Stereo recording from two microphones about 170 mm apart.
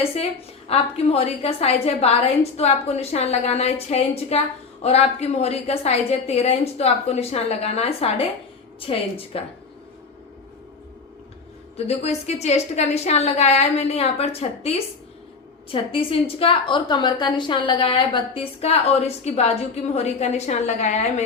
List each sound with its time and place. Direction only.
0.0 s a woman's voice: 40° left (ahead or behind)
11.9 s a woman's voice: 40° left (ahead or behind)